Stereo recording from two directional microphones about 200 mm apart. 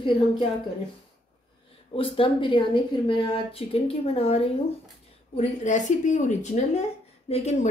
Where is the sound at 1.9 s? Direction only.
25° left (ahead or behind).